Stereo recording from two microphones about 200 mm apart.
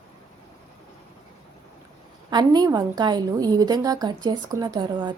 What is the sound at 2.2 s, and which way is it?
A woman's voice, 20° right (ahead or behind).